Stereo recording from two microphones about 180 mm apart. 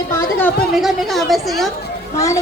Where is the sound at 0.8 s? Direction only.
Centre (ahead or behind).